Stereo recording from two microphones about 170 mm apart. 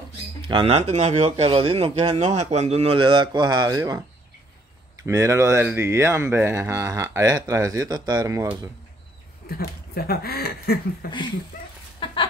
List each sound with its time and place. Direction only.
0.4 s speech: 30° right (ahead or behind)
0.7 s speech: 40° right (ahead or behind)
2.1 s a man's voice: 40° right (ahead or behind); by 4.0 s 20° right (ahead or behind)
5.0 s speech: 15° right (ahead or behind)
9.5 s speech: 65° left (ahead or behind)